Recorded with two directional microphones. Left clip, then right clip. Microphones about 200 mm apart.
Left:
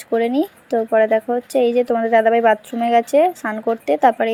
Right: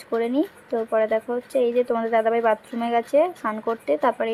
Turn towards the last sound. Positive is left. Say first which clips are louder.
# left 6 dB
turn(degrees=15)  # may be behind; listen again after turning